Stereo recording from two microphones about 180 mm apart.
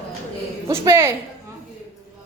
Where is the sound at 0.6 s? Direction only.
15° right (ahead or behind).